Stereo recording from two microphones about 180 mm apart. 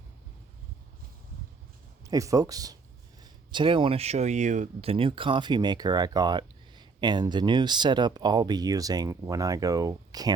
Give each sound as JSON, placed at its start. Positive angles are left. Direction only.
{"t": 2.0, "sound": "speech", "side_deg": -20}